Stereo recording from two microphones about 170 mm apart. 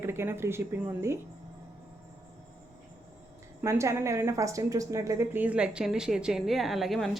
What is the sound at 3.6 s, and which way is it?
A woman's voice, 15° right (ahead or behind).